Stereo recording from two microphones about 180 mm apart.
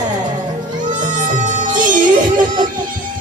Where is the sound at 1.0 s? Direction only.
45° right (ahead or behind).